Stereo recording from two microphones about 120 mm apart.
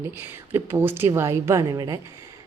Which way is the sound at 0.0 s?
20° right (ahead or behind).